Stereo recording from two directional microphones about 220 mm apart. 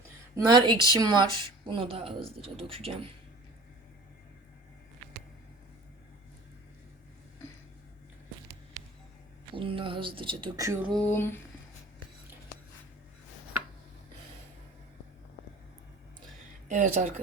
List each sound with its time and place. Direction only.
0.3 s speech: 20° right (ahead or behind)
9.6 s speech: 25° right (ahead or behind)
10.9 s a sound: 10° left (ahead or behind)
16.6 s speech: 35° right (ahead or behind)